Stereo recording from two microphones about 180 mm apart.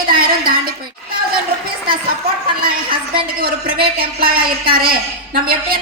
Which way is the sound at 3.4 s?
55° right (ahead or behind).